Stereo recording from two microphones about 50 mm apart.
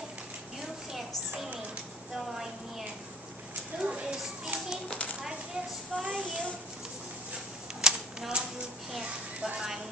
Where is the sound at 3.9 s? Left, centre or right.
Centre.